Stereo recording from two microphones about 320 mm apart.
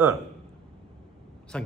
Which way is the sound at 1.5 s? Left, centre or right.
Centre.